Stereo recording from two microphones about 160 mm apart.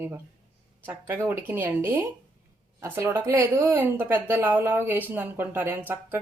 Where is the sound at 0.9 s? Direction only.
15° right (ahead or behind).